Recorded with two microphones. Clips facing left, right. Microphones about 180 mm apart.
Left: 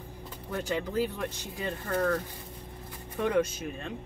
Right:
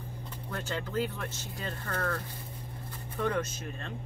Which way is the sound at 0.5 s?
15° left (ahead or behind).